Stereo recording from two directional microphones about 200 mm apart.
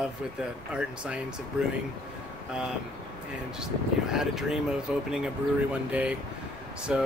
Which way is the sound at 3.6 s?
Centre (ahead or behind).